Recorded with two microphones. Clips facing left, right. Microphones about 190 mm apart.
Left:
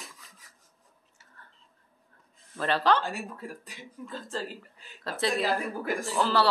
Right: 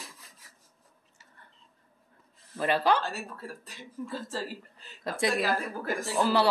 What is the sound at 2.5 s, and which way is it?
Speech, 10° right (ahead or behind).